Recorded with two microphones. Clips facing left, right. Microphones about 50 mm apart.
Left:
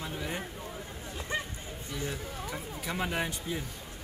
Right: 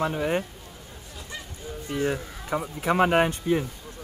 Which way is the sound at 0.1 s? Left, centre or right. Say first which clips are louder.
Right 10 dB; right.